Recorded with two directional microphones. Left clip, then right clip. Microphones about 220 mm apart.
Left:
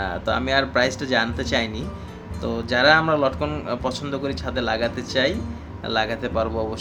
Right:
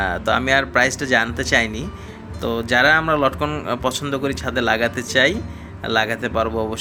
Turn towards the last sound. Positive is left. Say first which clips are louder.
# right 3 dB
turn(degrees=-15)  # may be behind; listen again after turning